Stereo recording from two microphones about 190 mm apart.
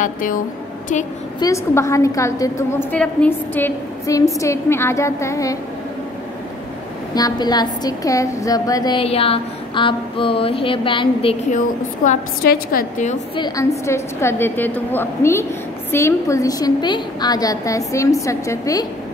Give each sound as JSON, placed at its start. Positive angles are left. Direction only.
{"t": 0.0, "sound": "a woman's voice", "side_deg": 45}
{"t": 1.4, "sound": "a woman's voice", "side_deg": 15}
{"t": 7.2, "sound": "a woman's voice", "side_deg": 20}
{"t": 11.5, "sound": "a woman's voice", "side_deg": 40}
{"t": 13.4, "sound": "a woman's voice", "side_deg": 15}